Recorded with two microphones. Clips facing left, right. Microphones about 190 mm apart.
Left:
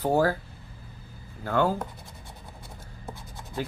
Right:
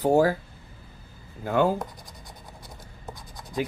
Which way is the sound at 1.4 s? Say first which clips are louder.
Right 2 dB; 15° right (ahead or behind).